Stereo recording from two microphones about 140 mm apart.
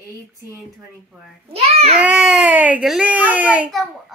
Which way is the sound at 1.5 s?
45° right (ahead or behind).